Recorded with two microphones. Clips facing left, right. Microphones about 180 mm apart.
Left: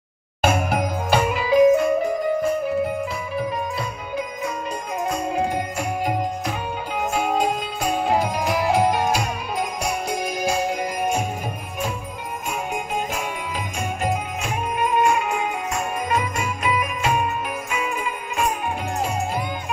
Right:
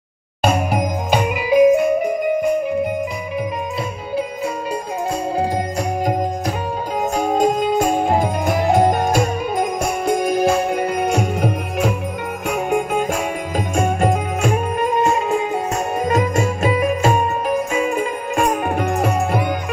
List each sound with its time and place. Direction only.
1.1 s music: 15° right (ahead or behind)
7.2 s music: 45° right (ahead or behind); by 11.9 s 70° right (ahead or behind)
12.4 s music: 55° right (ahead or behind)
15.0 s music: 35° right (ahead or behind); by 19.4 s 65° right (ahead or behind)